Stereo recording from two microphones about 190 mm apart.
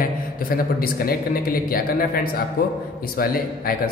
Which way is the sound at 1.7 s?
50° left (ahead or behind).